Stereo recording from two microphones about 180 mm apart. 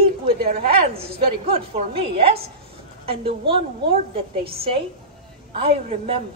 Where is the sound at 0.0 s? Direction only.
55° right (ahead or behind).